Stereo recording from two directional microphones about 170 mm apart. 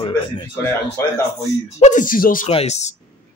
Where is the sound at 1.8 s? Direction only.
50° left (ahead or behind).